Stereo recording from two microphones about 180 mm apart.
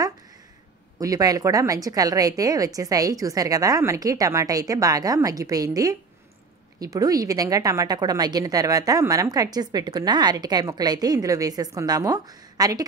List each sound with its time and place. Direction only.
0.9 s a woman's voice: 20° right (ahead or behind)